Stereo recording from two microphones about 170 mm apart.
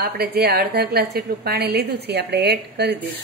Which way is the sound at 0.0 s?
65° right (ahead or behind).